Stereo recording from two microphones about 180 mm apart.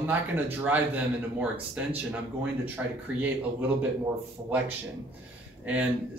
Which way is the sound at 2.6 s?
10° right (ahead or behind).